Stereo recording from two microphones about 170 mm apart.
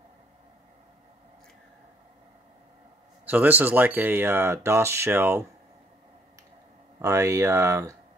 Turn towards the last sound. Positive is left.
turn(degrees=-15)  # may be behind; listen again after turning